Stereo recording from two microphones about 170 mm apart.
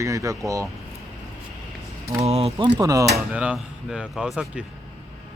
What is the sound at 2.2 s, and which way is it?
Speech, 35° right (ahead or behind).